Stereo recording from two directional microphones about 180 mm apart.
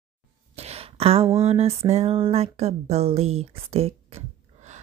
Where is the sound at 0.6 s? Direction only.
35° right (ahead or behind).